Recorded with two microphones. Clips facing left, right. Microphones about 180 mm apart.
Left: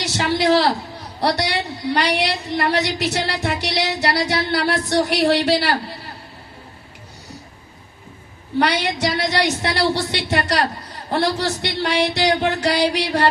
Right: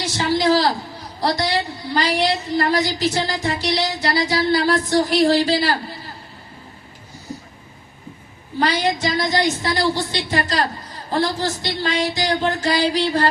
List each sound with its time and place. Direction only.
0.0 s a woman's voice: 70° left (ahead or behind)
8.5 s a woman's voice: 70° left (ahead or behind)